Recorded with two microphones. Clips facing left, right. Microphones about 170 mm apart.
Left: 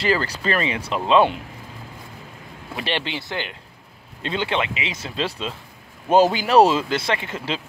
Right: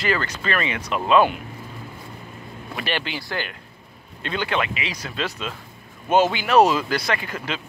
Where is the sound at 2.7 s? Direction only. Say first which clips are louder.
Left 1 dB; 25° left (ahead or behind).